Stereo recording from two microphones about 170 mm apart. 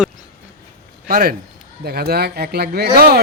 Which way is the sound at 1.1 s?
65° right (ahead or behind).